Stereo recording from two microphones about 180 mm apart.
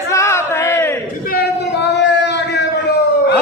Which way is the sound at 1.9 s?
75° left (ahead or behind).